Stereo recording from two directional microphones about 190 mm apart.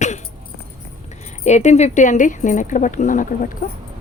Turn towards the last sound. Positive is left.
turn(degrees=45)  # may be behind; listen again after turning